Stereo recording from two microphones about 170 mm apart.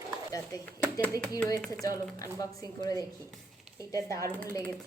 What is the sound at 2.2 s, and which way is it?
Speech, 20° left (ahead or behind).